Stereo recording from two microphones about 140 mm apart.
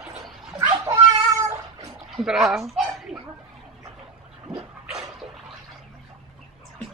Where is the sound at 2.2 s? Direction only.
Centre (ahead or behind).